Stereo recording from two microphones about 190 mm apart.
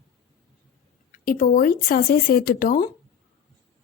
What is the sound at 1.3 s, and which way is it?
A woman's voice, 50° left (ahead or behind).